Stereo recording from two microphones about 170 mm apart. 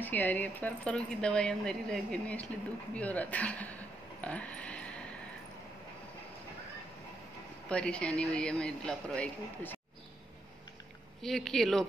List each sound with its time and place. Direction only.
0.0 s speech: 10° left (ahead or behind)
7.6 s speech: 5° left (ahead or behind)
11.1 s speech: centre (ahead or behind)